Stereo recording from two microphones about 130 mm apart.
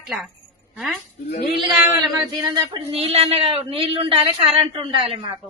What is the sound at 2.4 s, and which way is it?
Speech, 35° right (ahead or behind).